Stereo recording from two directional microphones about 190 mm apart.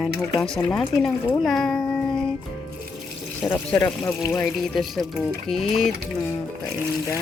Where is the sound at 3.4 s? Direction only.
Centre (ahead or behind).